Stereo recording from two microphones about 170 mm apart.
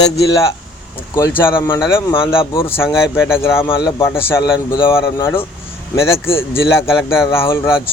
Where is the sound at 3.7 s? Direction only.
30° left (ahead or behind).